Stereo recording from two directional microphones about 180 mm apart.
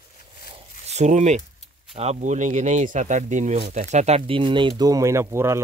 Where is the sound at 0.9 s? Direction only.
40° right (ahead or behind).